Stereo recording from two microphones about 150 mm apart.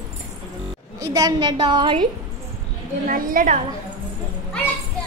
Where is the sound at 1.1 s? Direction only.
25° right (ahead or behind).